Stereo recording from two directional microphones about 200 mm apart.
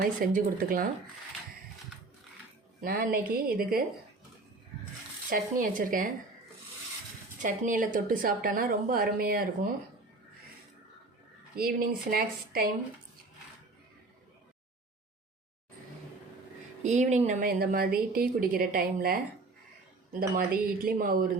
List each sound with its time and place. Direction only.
0.0 s a woman's voice: 45° right (ahead or behind)
2.8 s a woman's voice: 45° right (ahead or behind)
5.3 s a woman's voice: 45° right (ahead or behind)
7.4 s a woman's voice: 40° right (ahead or behind)
11.5 s a woman's voice: 45° right (ahead or behind)
16.8 s a woman's voice: 35° right (ahead or behind)